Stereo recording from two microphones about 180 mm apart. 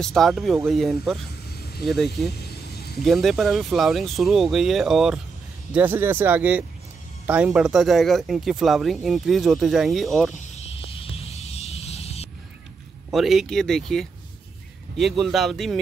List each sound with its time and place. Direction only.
0.0 s speech: centre (ahead or behind)
2.4 s vehicle: 65° left (ahead or behind)
3.1 s speech: centre (ahead or behind)
11.0 s music: 35° left (ahead or behind)
13.1 s speech: centre (ahead or behind)